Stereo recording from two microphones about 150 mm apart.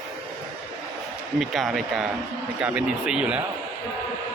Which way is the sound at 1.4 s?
Centre (ahead or behind).